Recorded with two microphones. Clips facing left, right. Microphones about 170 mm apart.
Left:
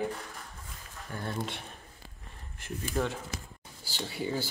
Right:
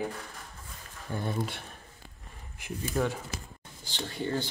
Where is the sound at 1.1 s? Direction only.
25° right (ahead or behind).